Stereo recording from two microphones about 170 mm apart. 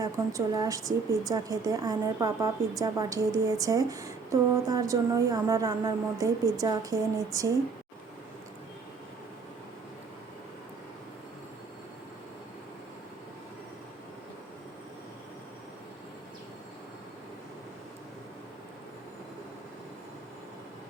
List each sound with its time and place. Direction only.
0.0 s a woman's voice: 20° right (ahead or behind)